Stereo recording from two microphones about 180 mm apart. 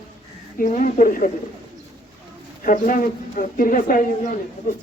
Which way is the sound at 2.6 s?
50° left (ahead or behind).